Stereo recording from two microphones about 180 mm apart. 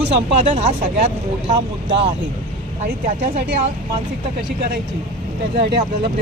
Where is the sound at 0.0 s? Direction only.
35° right (ahead or behind).